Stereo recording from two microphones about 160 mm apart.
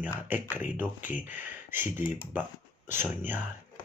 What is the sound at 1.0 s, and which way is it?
Speech, 55° left (ahead or behind).